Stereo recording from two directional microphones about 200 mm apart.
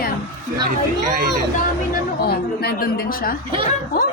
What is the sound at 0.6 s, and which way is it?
Speech, 50° right (ahead or behind).